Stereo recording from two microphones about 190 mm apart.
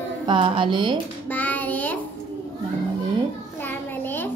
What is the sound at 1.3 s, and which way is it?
Child singing, 10° left (ahead or behind).